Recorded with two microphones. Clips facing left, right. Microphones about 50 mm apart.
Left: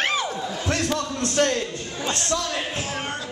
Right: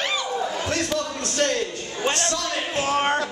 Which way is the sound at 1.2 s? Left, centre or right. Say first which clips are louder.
Left 4 dB; left.